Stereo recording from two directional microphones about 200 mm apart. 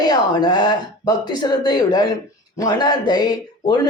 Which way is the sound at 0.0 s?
20° left (ahead or behind).